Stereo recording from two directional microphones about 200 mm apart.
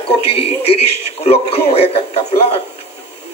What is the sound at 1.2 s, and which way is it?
Speech, 30° left (ahead or behind).